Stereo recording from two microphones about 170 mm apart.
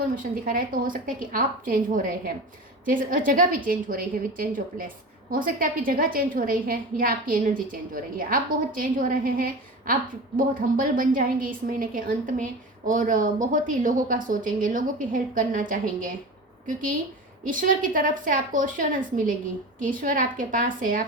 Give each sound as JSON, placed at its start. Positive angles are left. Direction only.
{"t": 0.2, "sound": "a woman's voice", "side_deg": -55}
{"t": 17.4, "sound": "speech", "side_deg": -55}